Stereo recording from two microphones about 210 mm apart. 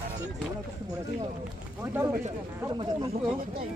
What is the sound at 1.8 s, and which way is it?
Speech, 10° right (ahead or behind).